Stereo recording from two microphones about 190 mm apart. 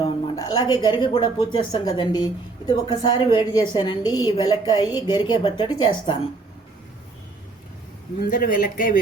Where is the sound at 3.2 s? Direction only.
15° right (ahead or behind).